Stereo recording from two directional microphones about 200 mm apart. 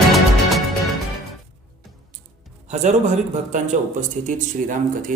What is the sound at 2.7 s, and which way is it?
Music, 35° right (ahead or behind).